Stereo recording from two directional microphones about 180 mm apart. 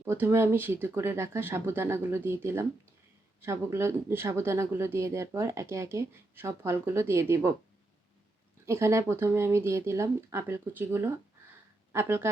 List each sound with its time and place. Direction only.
0.0 s speech: 10° right (ahead or behind)
8.6 s speech: 15° right (ahead or behind)